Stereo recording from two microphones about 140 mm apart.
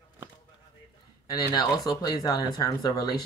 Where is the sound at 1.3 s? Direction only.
25° left (ahead or behind).